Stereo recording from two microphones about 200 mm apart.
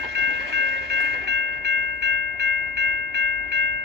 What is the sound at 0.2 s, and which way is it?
Train, 60° right (ahead or behind).